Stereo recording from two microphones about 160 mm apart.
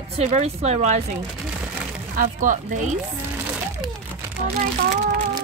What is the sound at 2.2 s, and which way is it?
Speech, 60° right (ahead or behind).